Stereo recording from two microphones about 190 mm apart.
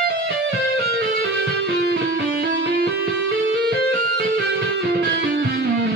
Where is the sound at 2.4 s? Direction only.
70° right (ahead or behind).